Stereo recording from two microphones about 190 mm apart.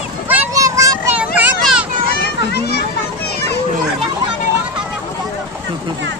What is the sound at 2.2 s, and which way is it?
Children playing, 55° left (ahead or behind).